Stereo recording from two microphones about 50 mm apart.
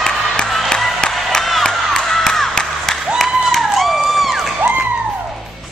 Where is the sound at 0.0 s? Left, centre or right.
Centre.